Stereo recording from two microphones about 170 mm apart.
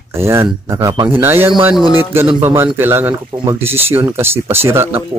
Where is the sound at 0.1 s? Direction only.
15° right (ahead or behind).